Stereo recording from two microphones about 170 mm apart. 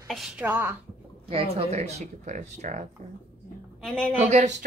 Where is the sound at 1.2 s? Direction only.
35° right (ahead or behind).